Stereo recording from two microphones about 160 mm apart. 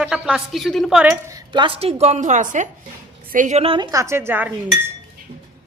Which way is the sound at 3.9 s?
15° right (ahead or behind).